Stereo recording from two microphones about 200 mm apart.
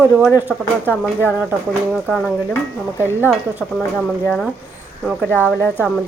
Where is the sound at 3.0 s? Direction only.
10° right (ahead or behind).